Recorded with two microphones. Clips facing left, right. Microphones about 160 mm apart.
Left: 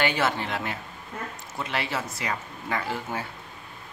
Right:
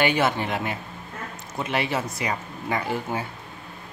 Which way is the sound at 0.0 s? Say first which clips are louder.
Right 3 dB; 15° right (ahead or behind).